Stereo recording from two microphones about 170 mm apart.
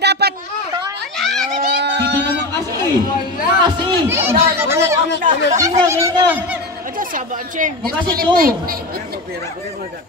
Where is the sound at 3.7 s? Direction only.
25° right (ahead or behind).